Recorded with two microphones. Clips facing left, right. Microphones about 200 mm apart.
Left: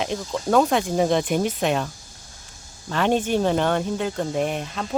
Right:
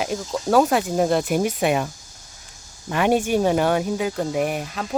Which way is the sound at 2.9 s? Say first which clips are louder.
Right 2 dB; 10° right (ahead or behind).